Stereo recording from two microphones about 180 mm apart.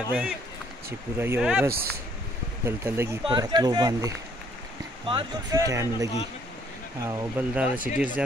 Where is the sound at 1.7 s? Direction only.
60° right (ahead or behind).